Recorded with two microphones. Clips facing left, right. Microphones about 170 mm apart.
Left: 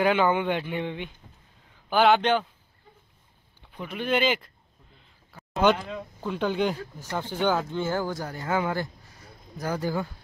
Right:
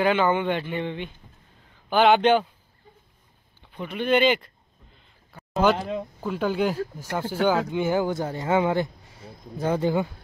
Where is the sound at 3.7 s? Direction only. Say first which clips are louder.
Right 4 dB; 5° left (ahead or behind).